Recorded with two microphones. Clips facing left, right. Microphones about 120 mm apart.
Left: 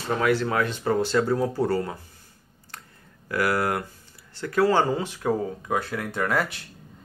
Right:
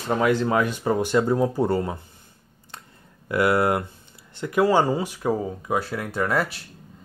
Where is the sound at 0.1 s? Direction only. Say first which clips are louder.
Right 2 dB; 20° right (ahead or behind).